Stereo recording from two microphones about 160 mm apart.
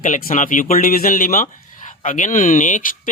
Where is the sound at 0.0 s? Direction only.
55° left (ahead or behind).